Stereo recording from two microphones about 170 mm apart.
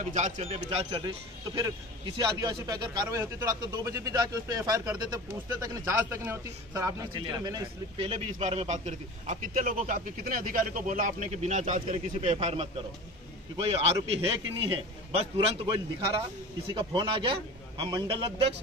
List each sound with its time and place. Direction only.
0.0 s speech: 45° right (ahead or behind); by 8.1 s 25° right (ahead or behind)
8.1 s a man's voice: 40° right (ahead or behind)